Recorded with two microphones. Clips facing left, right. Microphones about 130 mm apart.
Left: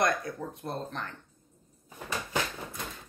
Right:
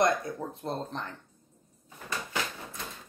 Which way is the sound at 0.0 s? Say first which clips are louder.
Right 2 dB; 25° right (ahead or behind).